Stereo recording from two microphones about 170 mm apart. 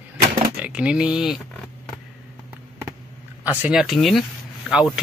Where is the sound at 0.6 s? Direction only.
5° right (ahead or behind).